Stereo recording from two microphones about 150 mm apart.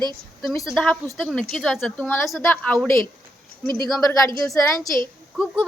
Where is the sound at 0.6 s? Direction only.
5° left (ahead or behind).